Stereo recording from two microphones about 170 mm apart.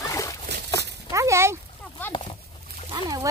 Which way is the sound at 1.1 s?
15° right (ahead or behind).